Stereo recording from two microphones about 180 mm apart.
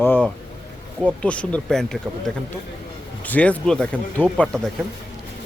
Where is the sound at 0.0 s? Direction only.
10° left (ahead or behind).